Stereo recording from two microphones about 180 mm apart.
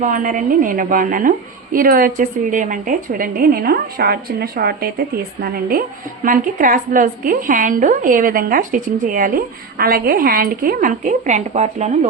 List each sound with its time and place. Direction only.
0.0 s a woman's voice: 45° right (ahead or behind)